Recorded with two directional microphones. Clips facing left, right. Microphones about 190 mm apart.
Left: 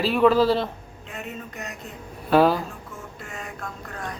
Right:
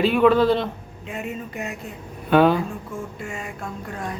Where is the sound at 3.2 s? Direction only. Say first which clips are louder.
Right 5 dB; 10° right (ahead or behind).